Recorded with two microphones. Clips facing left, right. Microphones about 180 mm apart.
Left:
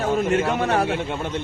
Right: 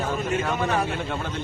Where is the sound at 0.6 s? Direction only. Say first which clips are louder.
Left 4 dB; 75° left (ahead or behind).